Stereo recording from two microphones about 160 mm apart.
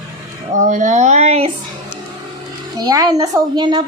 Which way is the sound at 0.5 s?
50° right (ahead or behind).